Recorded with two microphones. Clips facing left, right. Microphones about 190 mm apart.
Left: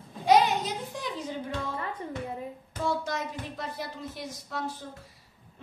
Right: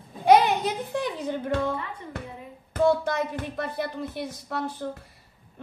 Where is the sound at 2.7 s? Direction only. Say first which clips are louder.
Right 9 dB; 60° right (ahead or behind).